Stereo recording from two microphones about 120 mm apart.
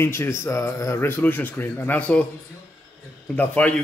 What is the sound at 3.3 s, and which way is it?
Mantra, 15° left (ahead or behind).